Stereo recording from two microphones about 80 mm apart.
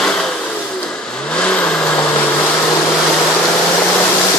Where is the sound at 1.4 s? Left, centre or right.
Centre.